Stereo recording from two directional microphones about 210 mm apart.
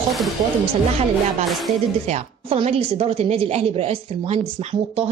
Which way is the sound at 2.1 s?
30° right (ahead or behind).